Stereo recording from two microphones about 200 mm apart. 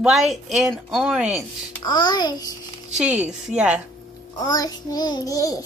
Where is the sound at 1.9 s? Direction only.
20° left (ahead or behind).